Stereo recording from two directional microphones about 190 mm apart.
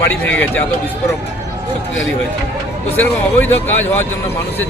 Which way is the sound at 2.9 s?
10° left (ahead or behind).